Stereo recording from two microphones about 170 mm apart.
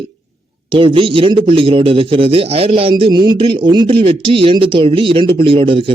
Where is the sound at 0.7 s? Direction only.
30° right (ahead or behind).